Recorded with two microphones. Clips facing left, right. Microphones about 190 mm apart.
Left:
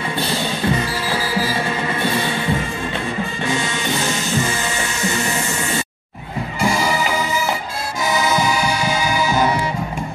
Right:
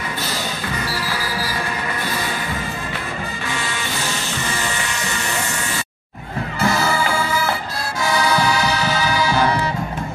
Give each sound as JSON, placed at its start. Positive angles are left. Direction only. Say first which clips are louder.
{"t": 6.6, "sound": "music", "louder": "even", "side_deg": 10}